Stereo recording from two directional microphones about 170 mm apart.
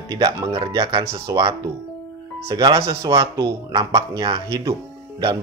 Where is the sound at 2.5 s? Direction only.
20° right (ahead or behind).